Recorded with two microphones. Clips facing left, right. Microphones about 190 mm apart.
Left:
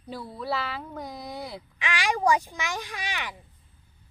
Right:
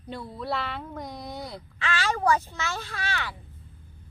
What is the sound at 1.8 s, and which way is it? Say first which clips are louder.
Speech: even; 15° left (ahead or behind).